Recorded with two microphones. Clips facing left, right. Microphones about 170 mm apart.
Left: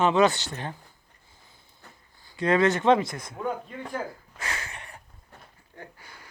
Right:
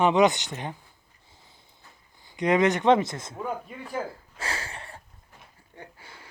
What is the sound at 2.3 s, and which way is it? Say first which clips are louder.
Speech: even; 20° right (ahead or behind).